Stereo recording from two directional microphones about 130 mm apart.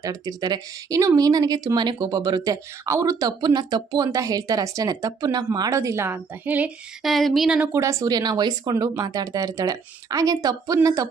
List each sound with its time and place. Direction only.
0.0 s speech: 30° right (ahead or behind); by 6.7 s 15° right (ahead or behind)
7.0 s speech: centre (ahead or behind)
7.6 s speech: 20° right (ahead or behind)